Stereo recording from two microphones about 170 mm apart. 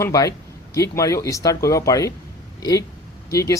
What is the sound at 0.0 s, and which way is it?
A man's voice, 20° left (ahead or behind).